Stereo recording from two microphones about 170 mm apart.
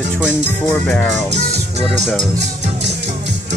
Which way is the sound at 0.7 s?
5° left (ahead or behind).